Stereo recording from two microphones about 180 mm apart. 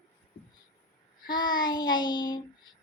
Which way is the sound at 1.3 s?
25° left (ahead or behind).